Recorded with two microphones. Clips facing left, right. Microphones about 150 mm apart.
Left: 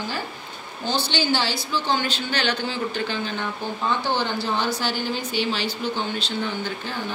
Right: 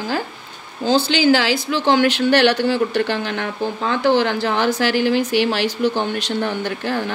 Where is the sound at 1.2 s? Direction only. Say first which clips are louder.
Right 9 dB; 90° right.